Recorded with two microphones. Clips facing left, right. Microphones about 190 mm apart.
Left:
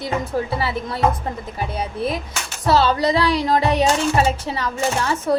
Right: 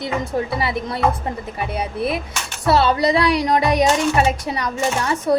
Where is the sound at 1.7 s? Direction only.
10° right (ahead or behind).